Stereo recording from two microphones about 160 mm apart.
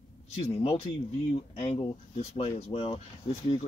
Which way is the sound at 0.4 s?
40° left (ahead or behind).